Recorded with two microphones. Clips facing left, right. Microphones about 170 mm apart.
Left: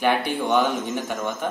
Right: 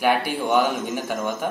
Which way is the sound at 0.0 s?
10° right (ahead or behind).